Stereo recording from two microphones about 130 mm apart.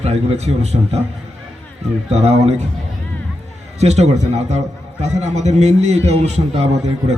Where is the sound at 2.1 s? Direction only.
55° right (ahead or behind).